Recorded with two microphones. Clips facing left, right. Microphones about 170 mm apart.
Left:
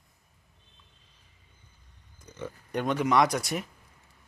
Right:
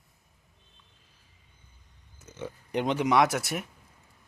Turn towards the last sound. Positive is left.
turn(degrees=0)  # may be behind; listen again after turning